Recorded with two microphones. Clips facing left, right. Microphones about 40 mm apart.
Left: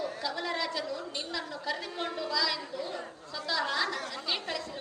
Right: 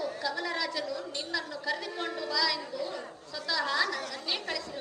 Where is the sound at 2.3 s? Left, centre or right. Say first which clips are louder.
Right 3 dB; left.